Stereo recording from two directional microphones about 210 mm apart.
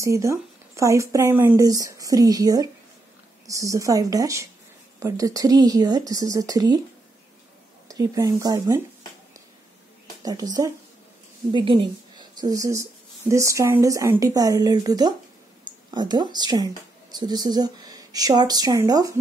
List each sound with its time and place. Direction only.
0.0 s speech: 15° right (ahead or behind)
7.9 s speech: 15° right (ahead or behind)
10.2 s a woman's voice: 15° right (ahead or behind)